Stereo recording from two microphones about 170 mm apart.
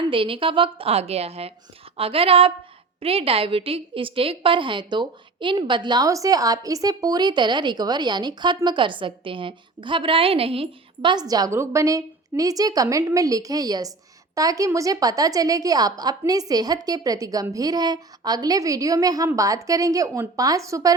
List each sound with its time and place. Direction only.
0.1 s a woman's voice: 30° right (ahead or behind)